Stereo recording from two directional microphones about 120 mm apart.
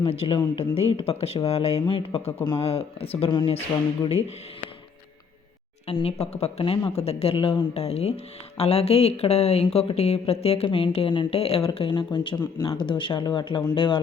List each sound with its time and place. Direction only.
0.0 s speech: 50° left (ahead or behind)
1.8 s speech: 45° left (ahead or behind)
5.9 s speech: 55° left (ahead or behind)